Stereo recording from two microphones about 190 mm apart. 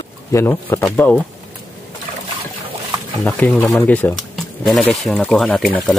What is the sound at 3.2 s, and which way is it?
Speech, 5° left (ahead or behind).